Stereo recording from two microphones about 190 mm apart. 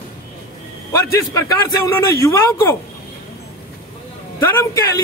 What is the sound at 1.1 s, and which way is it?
A man's voice, 20° left (ahead or behind).